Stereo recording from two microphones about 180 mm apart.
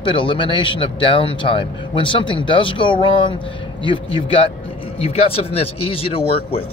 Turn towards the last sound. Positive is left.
turn(degrees=30)  # may be behind; listen again after turning